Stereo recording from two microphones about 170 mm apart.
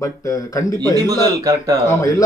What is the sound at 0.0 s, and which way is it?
Speech, 20° left (ahead or behind).